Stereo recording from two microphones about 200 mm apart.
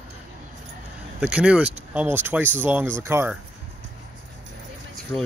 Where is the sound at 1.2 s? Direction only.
5° right (ahead or behind).